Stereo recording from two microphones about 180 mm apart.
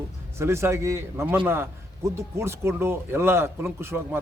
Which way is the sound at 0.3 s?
15° right (ahead or behind).